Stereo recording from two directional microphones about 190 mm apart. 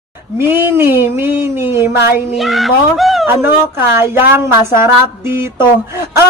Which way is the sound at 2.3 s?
Centre (ahead or behind).